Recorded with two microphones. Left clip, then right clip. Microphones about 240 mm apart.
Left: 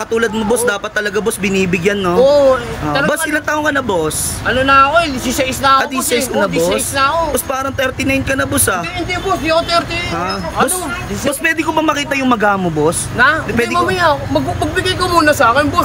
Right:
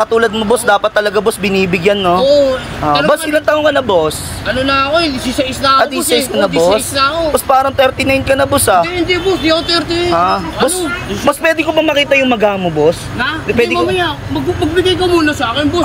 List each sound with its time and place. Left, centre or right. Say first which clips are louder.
0.0 s speech: right 4 dB; centre
10.1 s speech: right 4 dB; centre
15.2 s speech: left 4 dB; left